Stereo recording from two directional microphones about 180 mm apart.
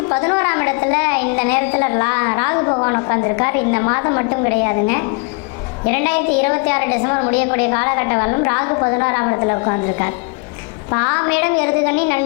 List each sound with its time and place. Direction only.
0.1 s a woman's voice: 20° left (ahead or behind)